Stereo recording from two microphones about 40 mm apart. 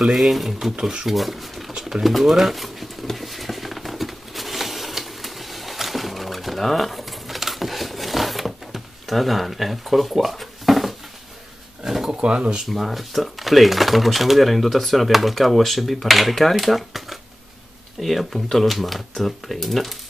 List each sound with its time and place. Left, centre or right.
0.0 s speech: centre
0.7 s speech: centre
1.0 s speech: centre
1.9 s pigeon: centre
12.1 s speech: right
12.6 s speech: centre